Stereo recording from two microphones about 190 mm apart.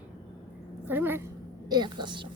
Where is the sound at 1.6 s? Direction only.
20° right (ahead or behind).